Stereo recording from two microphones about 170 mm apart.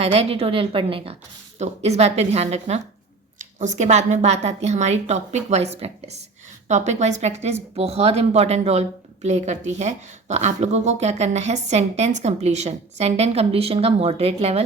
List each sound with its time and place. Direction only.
0.0 s a woman's voice: 35° right (ahead or behind)